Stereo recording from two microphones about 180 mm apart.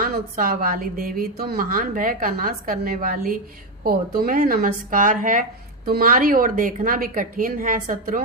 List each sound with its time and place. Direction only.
0.0 s a woman's voice: 50° right (ahead or behind)